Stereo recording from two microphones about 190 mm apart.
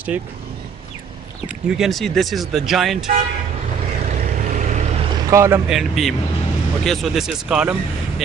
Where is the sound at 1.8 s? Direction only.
Centre (ahead or behind).